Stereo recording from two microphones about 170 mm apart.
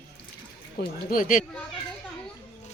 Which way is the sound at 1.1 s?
50° left (ahead or behind).